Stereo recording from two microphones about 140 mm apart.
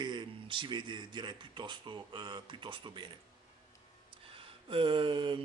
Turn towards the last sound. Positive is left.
turn(degrees=-35)  # may be behind; listen again after turning